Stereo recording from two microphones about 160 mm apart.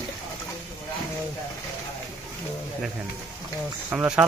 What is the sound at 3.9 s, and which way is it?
Speech, 10° right (ahead or behind).